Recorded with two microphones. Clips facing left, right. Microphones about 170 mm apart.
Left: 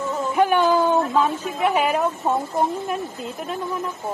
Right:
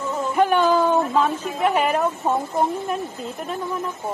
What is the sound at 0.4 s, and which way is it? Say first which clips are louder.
A woman's voice: even; centre (ahead or behind).